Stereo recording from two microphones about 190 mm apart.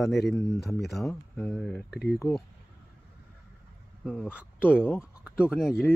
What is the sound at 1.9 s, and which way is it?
Speech, 60° left (ahead or behind).